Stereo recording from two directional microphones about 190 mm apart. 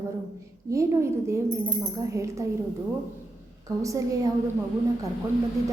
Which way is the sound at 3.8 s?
15° right (ahead or behind).